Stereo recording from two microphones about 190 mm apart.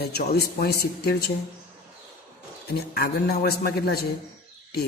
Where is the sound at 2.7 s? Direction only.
55° left (ahead or behind).